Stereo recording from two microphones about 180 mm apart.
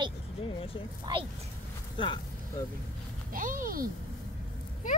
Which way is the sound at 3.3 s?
50° right (ahead or behind).